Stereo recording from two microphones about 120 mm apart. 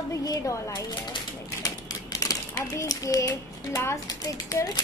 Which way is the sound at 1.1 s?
30° left (ahead or behind).